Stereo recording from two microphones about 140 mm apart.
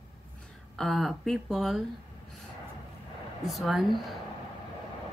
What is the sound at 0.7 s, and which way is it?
Speech, centre (ahead or behind).